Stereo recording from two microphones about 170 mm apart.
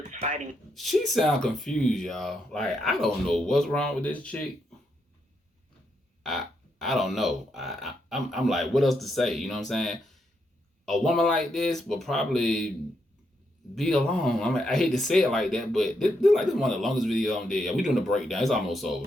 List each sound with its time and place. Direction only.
0.1 s a sound: 45° right (ahead or behind)
0.7 s speech: centre (ahead or behind)
6.2 s speech: centre (ahead or behind)
13.7 s speech: 5° left (ahead or behind)